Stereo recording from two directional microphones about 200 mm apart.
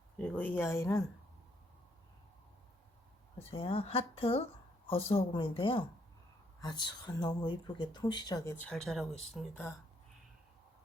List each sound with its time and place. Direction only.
0.2 s speech: 10° left (ahead or behind)
3.3 s speech: 30° left (ahead or behind)
8.6 s speech: centre (ahead or behind)